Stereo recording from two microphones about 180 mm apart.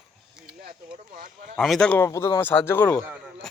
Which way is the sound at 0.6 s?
55° right (ahead or behind).